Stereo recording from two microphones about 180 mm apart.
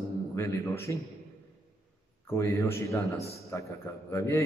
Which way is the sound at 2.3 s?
15° left (ahead or behind).